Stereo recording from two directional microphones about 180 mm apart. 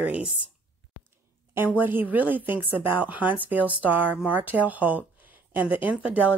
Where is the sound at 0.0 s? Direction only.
5° right (ahead or behind).